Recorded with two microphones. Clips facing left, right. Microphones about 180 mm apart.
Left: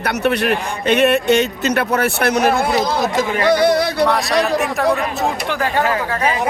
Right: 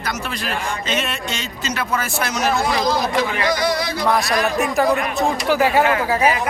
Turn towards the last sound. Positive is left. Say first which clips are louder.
# right 1 dB
turn(degrees=-10)  # may be behind; listen again after turning